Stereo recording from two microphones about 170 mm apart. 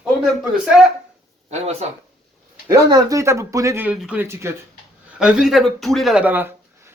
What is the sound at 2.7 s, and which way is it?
A man's voice, 25° right (ahead or behind).